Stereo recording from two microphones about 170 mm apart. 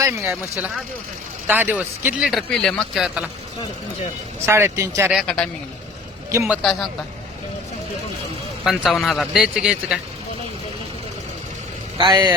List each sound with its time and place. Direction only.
0.0 s speech: 15° right (ahead or behind)
1.5 s a man's voice: 10° right (ahead or behind)
4.4 s speech: 15° right (ahead or behind)
5.1 s a man's voice: 5° left (ahead or behind)
6.3 s speech: 15° right (ahead or behind)
6.6 s a man's voice: 5° left (ahead or behind)
8.6 s a man's voice: centre (ahead or behind)
11.9 s speech: 25° right (ahead or behind)